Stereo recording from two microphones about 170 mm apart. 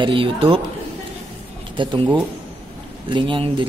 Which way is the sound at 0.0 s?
30° right (ahead or behind).